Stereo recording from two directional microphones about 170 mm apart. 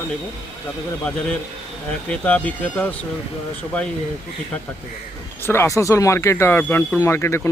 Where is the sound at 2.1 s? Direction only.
10° left (ahead or behind).